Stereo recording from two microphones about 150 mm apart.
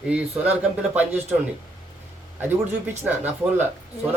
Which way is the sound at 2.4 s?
10° right (ahead or behind).